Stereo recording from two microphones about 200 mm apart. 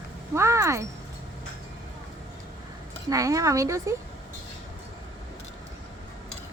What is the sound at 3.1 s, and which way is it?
Speech, 15° right (ahead or behind).